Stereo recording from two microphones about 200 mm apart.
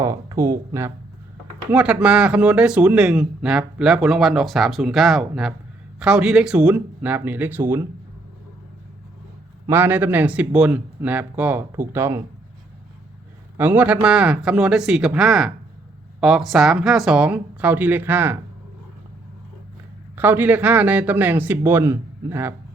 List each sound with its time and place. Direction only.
0.0 s speech: 15° right (ahead or behind)
9.6 s speech: 10° right (ahead or behind)
13.6 s speech: 5° right (ahead or behind)
20.1 s speech: 10° right (ahead or behind)